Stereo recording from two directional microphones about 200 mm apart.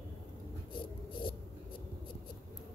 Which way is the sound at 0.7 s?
25° left (ahead or behind).